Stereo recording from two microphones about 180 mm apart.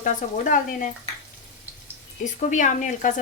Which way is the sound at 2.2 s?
45° left (ahead or behind).